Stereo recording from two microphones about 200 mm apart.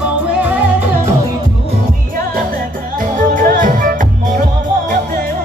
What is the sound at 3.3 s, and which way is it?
Music, 40° right (ahead or behind).